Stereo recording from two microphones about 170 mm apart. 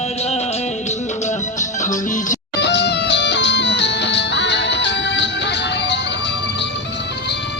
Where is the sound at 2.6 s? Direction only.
90° left.